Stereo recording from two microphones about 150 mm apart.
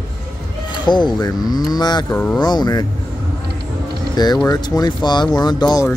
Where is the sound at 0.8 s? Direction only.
30° left (ahead or behind).